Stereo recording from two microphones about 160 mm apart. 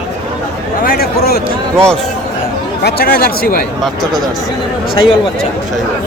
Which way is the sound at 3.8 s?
Centre (ahead or behind).